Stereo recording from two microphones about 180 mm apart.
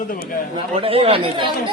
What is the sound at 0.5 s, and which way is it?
Speech, 30° right (ahead or behind).